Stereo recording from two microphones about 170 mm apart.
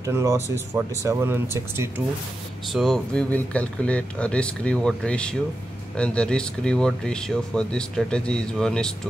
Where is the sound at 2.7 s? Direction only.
Centre (ahead or behind).